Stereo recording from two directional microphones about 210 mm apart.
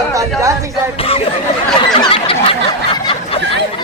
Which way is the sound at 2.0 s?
25° left (ahead or behind).